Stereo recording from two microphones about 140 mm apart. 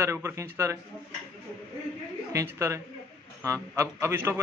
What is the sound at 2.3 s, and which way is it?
Speech, 20° right (ahead or behind).